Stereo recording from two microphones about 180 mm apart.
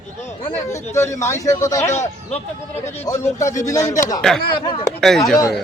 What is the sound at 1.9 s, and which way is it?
Speech, 40° left (ahead or behind).